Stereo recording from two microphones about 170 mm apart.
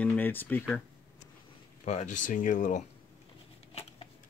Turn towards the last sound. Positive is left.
turn(degrees=35)  # may be behind; listen again after turning